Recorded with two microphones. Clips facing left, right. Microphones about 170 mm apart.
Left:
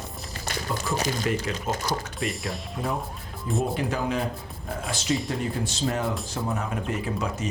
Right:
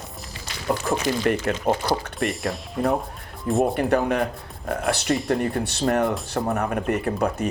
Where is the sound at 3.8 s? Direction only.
60° right (ahead or behind).